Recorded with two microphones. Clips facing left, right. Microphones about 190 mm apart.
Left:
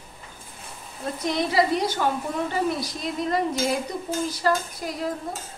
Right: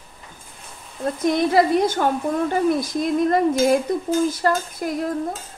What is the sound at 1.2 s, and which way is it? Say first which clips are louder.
Stir: right 5 dB; 50° right (ahead or behind).